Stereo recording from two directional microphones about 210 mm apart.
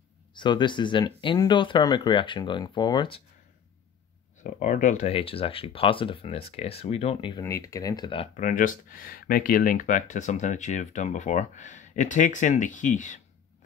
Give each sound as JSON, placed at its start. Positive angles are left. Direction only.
{"t": 0.3, "sound": "speech", "side_deg": 20}
{"t": 4.4, "sound": "speech", "side_deg": 35}
{"t": 8.4, "sound": "speech", "side_deg": 40}